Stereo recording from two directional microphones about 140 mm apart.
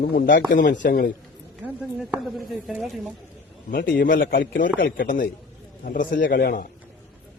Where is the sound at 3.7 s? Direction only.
90° left.